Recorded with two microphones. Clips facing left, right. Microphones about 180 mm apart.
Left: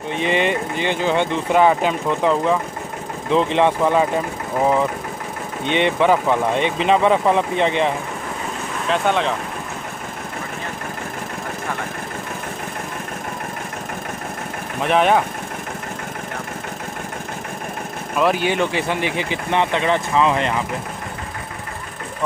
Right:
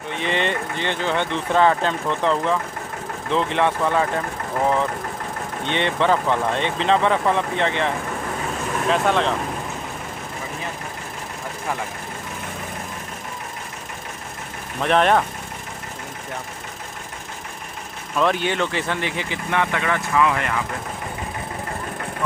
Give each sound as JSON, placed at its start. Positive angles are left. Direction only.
{"t": 0.1, "sound": "speech", "side_deg": 15}
{"t": 5.7, "sound": "speech", "side_deg": 15}
{"t": 8.9, "sound": "speech", "side_deg": 0}
{"t": 14.8, "sound": "speech", "side_deg": 5}
{"t": 18.1, "sound": "speech", "side_deg": 10}